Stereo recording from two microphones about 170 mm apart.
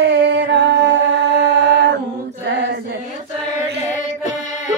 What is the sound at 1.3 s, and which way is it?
Mantra, 90° right.